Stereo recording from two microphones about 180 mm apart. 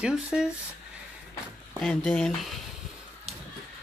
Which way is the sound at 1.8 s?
5° left (ahead or behind).